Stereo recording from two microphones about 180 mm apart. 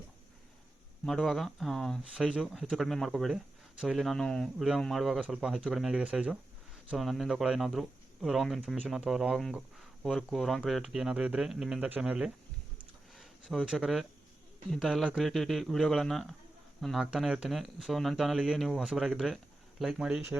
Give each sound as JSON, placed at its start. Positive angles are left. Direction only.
{"t": 1.0, "sound": "speech", "side_deg": 0}